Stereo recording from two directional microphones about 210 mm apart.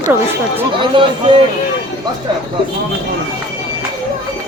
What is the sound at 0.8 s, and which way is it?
Speech, 25° right (ahead or behind).